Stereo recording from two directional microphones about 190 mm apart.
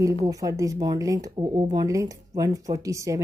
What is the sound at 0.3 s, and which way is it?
Speech, 20° right (ahead or behind).